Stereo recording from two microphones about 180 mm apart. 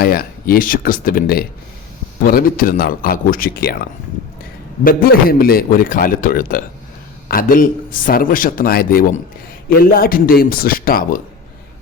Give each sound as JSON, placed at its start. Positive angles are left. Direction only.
{"t": 0.0, "sound": "a man's voice", "side_deg": 55}
{"t": 4.8, "sound": "a man's voice", "side_deg": 55}